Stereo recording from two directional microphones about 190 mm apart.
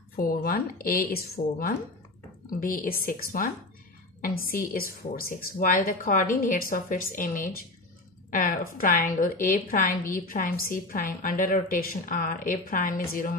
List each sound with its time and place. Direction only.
0.1 s a woman's voice: 50° left (ahead or behind)